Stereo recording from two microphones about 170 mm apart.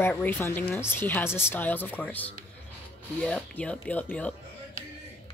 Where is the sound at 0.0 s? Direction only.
10° left (ahead or behind).